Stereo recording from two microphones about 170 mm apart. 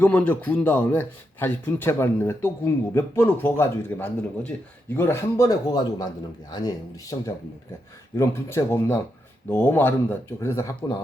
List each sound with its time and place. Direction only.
0.0 s a man's voice: 10° left (ahead or behind)